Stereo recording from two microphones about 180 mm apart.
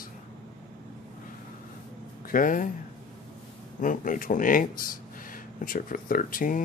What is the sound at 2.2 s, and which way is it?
Speech, 50° left (ahead or behind).